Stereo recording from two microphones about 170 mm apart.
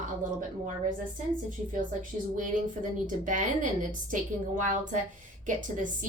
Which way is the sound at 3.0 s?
50° right (ahead or behind).